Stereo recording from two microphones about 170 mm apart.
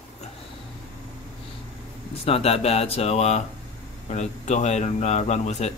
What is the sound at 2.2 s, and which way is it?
Speech, 35° left (ahead or behind).